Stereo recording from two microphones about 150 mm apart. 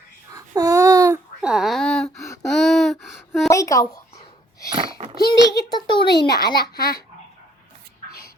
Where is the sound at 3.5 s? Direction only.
20° left (ahead or behind).